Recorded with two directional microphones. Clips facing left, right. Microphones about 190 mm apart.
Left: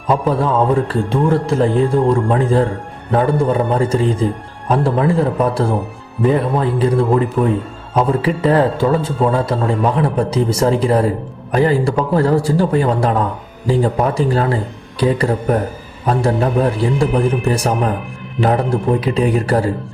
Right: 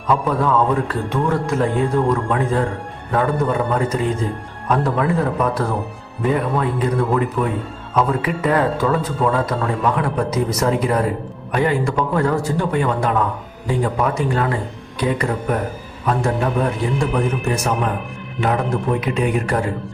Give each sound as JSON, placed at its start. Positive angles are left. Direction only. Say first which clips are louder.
{"t": 0.1, "sound": "music", "louder": "left 2 dB", "side_deg": 30}
{"t": 4.7, "sound": "speech", "louder": "left 3 dB", "side_deg": 30}
{"t": 11.5, "sound": "music", "louder": "left 4 dB", "side_deg": 35}